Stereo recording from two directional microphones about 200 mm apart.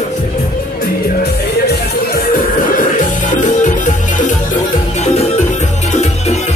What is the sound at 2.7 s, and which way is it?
Music, 40° left (ahead or behind).